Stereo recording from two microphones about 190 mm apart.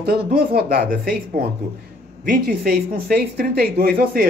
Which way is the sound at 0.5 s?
50° right (ahead or behind).